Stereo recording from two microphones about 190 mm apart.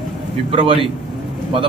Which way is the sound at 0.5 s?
30° right (ahead or behind).